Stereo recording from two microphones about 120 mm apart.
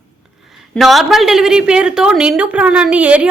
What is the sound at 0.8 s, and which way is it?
A woman's voice, centre (ahead or behind).